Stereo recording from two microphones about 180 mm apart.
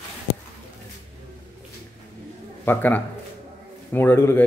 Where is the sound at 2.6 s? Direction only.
10° left (ahead or behind).